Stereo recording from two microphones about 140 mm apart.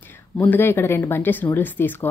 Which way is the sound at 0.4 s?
15° left (ahead or behind).